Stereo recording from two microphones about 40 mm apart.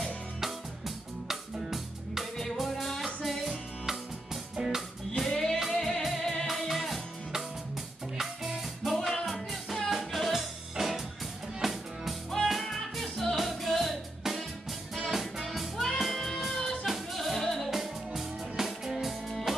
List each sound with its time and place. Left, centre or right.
0.4 s music: centre
5.3 s music: centre